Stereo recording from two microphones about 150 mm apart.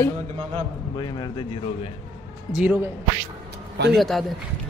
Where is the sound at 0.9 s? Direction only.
30° left (ahead or behind).